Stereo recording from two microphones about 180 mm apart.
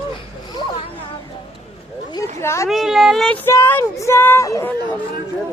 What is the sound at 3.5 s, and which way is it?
Speech, 15° left (ahead or behind).